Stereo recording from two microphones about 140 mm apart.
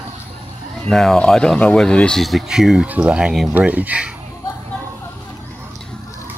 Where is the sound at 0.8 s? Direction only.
5° left (ahead or behind).